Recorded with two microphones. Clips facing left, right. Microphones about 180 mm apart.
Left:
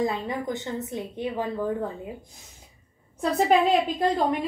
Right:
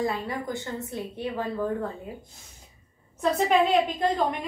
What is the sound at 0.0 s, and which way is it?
A woman's voice, 20° left (ahead or behind).